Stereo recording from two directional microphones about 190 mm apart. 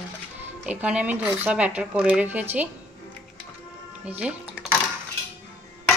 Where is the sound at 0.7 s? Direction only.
5° right (ahead or behind).